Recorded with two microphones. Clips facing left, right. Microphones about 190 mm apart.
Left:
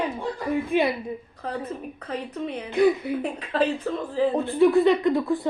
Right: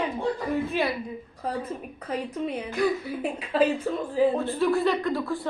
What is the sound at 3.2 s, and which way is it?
A woman's voice, 10° right (ahead or behind).